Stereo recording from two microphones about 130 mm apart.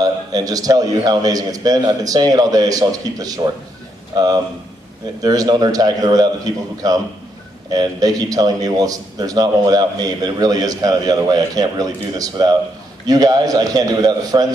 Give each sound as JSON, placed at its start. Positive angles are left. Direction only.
{"t": 0.0, "sound": "a man's voice", "side_deg": -30}